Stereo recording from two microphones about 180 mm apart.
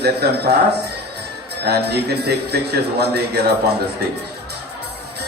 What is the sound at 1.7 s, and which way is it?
A man's voice, 65° right (ahead or behind).